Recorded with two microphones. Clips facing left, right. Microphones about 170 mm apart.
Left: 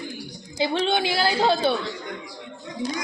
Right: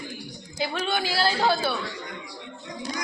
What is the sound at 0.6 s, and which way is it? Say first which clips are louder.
A woman's voice: left 5 dB; 25° left (ahead or behind).